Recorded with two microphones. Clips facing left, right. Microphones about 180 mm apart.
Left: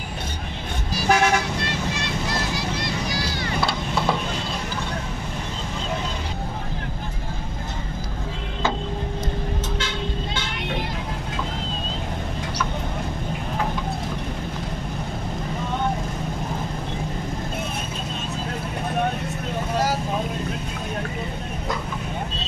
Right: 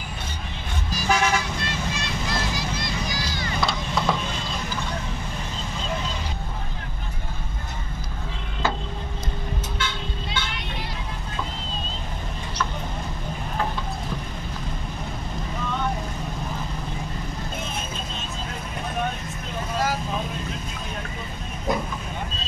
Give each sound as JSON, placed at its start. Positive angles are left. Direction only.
{"t": 0.9, "sound": "toot", "side_deg": 60}
{"t": 2.5, "sound": "vehicle", "side_deg": 65}
{"t": 3.6, "sound": "a sound", "side_deg": 5}